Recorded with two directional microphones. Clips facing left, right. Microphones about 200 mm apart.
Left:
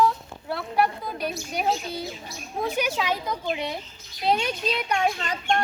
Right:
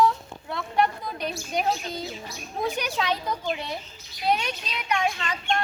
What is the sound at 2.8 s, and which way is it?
Speech, 10° left (ahead or behind).